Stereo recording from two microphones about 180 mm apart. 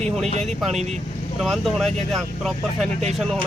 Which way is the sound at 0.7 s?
40° right (ahead or behind).